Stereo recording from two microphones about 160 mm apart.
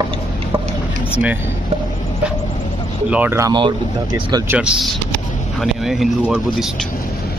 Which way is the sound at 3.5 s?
30° right (ahead or behind).